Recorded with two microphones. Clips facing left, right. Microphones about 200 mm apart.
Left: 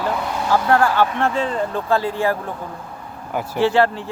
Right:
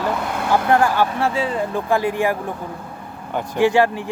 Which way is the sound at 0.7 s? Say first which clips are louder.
Even; 15° right (ahead or behind).